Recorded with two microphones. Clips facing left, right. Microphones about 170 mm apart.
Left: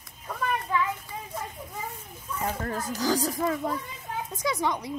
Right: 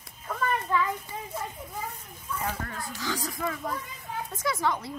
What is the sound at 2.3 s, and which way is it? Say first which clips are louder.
Speech: left 3 dB; 35° left (ahead or behind).